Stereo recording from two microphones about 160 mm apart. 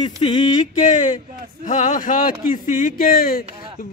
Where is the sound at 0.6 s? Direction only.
50° left (ahead or behind).